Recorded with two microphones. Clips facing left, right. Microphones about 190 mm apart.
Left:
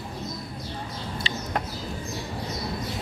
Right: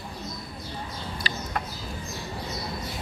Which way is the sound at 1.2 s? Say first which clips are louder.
Even; 25° left (ahead or behind).